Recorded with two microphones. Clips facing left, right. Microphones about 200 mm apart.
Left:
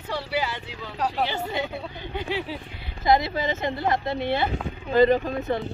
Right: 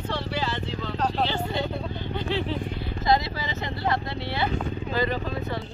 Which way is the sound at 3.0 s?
20° left (ahead or behind).